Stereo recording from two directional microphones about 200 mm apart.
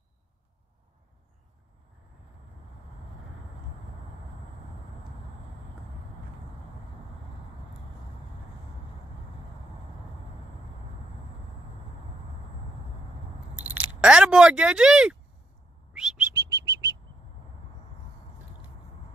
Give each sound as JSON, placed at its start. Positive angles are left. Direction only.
{"t": 14.0, "sound": "speech", "side_deg": -5}
{"t": 15.9, "sound": "bird", "side_deg": -5}